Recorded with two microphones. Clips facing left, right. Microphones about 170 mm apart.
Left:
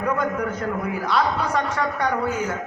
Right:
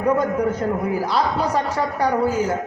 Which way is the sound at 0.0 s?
30° right (ahead or behind).